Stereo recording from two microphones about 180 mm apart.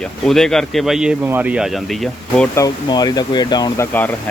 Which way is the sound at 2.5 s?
20° left (ahead or behind).